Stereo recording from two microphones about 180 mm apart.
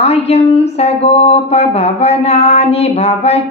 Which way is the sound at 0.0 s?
35° left (ahead or behind).